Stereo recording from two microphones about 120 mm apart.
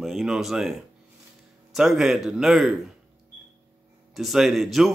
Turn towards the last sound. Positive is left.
turn(degrees=0)  # may be behind; listen again after turning